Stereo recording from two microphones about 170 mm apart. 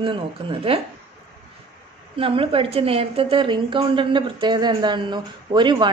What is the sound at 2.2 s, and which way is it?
A woman's voice, 35° right (ahead or behind).